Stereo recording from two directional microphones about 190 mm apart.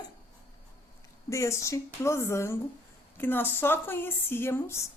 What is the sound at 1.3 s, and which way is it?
Speech, 15° left (ahead or behind).